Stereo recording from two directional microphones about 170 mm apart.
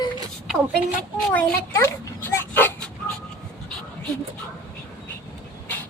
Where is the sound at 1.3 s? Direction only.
10° left (ahead or behind).